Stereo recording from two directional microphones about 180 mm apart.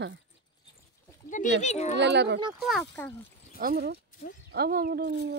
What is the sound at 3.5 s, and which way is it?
Speech, 55° right (ahead or behind).